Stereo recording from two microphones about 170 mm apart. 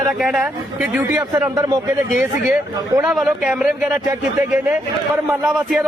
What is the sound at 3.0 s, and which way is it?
Speech, 5° right (ahead or behind).